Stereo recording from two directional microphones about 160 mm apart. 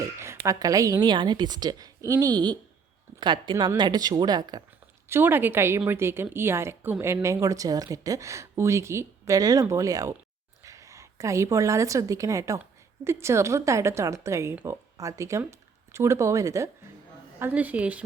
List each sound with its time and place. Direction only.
0.0 s a woman's voice: 20° right (ahead or behind)
5.0 s a woman's voice: 15° right (ahead or behind)